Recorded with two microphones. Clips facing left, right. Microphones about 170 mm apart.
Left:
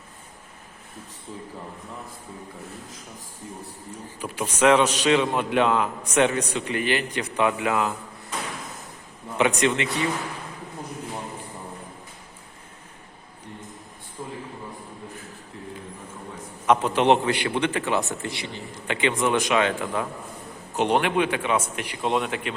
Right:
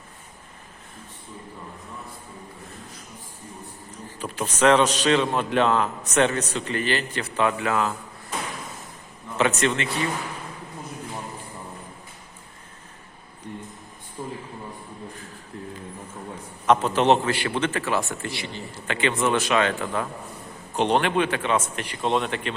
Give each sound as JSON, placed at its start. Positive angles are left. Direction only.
{"t": 4.2, "sound": "a man's voice", "side_deg": 10}
{"t": 9.4, "sound": "a man's voice", "side_deg": 15}
{"t": 16.6, "sound": "a man's voice", "side_deg": 10}